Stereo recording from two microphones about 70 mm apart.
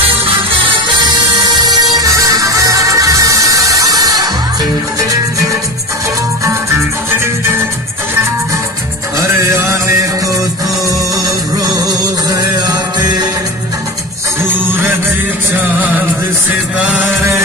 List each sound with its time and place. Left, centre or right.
1.0 s music: right
2.0 s music: right
9.4 s music: right
11.1 s music: right
14.5 s music: right
16.7 s music: centre
17.0 s a sound: right